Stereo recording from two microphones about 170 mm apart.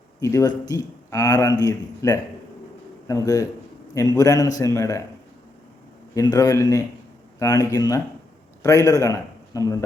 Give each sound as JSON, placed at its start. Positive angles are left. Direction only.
{"t": 0.2, "sound": "a man's voice", "side_deg": 20}
{"t": 6.1, "sound": "a man's voice", "side_deg": 20}